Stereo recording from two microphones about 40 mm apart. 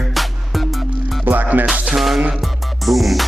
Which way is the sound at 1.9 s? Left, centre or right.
Centre.